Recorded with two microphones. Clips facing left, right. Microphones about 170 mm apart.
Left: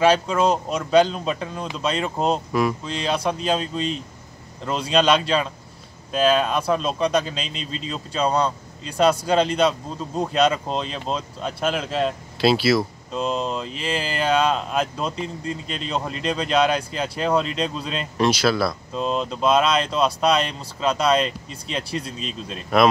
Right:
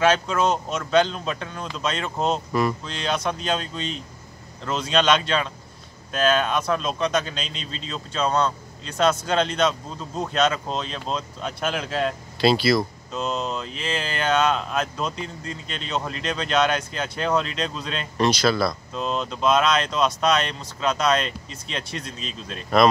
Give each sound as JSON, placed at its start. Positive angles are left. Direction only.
{"t": 0.7, "sound": "speech", "side_deg": 5}
{"t": 5.1, "sound": "speech", "side_deg": 5}
{"t": 19.9, "sound": "speech", "side_deg": 30}
{"t": 20.2, "sound": "speech", "side_deg": 5}